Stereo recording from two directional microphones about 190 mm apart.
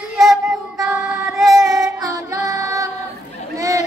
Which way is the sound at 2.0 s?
15° right (ahead or behind).